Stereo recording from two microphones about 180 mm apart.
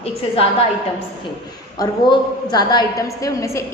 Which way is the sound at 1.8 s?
20° left (ahead or behind).